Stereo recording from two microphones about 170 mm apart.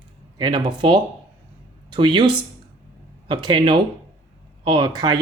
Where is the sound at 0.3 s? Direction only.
25° right (ahead or behind).